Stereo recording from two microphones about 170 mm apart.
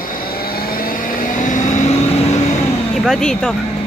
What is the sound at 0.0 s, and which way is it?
Vehicle, 55° left (ahead or behind).